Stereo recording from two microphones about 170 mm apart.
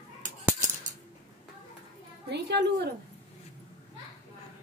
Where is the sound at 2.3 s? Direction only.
80° right.